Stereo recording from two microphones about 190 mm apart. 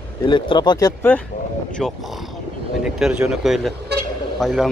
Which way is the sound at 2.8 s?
5° right (ahead or behind).